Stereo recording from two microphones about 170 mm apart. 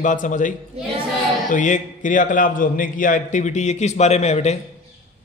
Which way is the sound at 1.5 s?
50° left (ahead or behind).